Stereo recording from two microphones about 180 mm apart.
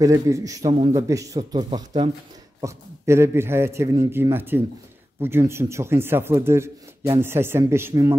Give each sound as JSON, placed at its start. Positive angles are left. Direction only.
{"t": 0.0, "sound": "a man's voice", "side_deg": -20}